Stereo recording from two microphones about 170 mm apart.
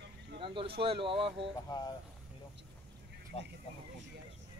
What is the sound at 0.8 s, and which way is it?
Speech, 30° right (ahead or behind).